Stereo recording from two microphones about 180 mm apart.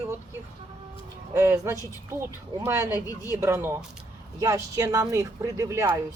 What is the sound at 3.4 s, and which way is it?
A woman's voice, 15° right (ahead or behind).